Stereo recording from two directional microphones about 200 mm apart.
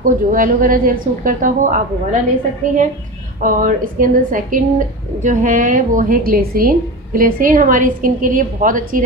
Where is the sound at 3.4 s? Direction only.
40° right (ahead or behind).